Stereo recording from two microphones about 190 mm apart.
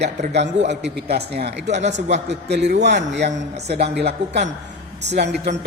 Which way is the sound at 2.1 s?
65° right (ahead or behind).